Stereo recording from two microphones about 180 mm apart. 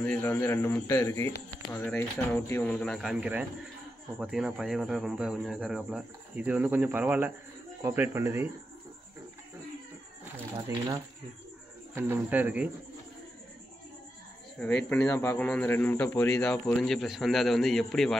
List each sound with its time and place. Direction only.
0.0 s a man's voice: 5° left (ahead or behind); by 8.5 s 15° right (ahead or behind)
11.9 s speech: 10° right (ahead or behind)
14.6 s a man's voice: 10° left (ahead or behind)